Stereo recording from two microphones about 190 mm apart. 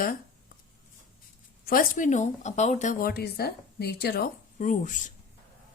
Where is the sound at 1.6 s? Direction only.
50° left (ahead or behind).